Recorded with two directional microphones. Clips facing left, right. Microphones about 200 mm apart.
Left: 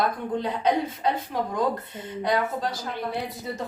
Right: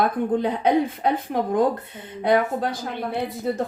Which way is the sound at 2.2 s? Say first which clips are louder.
Right 5 dB; 55° right (ahead or behind).